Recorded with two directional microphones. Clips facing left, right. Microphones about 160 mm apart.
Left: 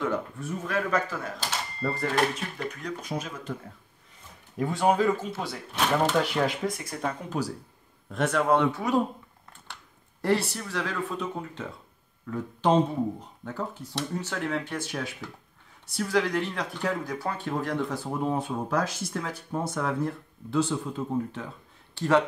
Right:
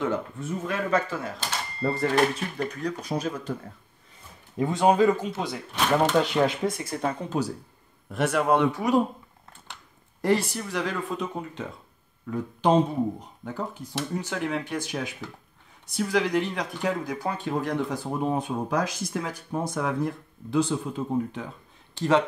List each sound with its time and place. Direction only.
0.0 s speech: 25° right (ahead or behind)
4.6 s speech: 20° right (ahead or behind)
8.1 s speech: 10° right (ahead or behind)
10.2 s speech: 15° right (ahead or behind)